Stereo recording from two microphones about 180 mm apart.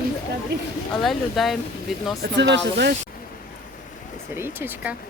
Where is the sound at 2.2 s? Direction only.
75° right (ahead or behind).